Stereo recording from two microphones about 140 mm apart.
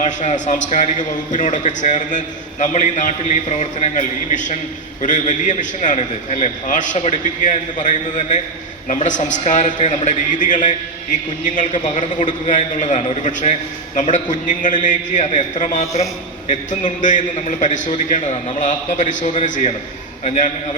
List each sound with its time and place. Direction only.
0.0 s a man's voice: 60° left (ahead or behind)